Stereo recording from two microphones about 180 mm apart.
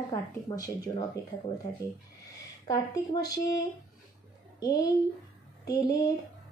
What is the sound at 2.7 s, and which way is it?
Speech, 20° left (ahead or behind).